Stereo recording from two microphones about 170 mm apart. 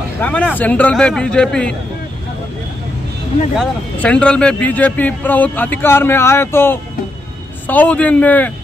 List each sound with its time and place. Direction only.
0.2 s speech: 10° left (ahead or behind)
3.5 s speech: 5° left (ahead or behind)